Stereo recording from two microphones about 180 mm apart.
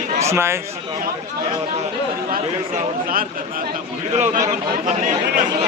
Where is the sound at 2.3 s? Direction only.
50° right (ahead or behind).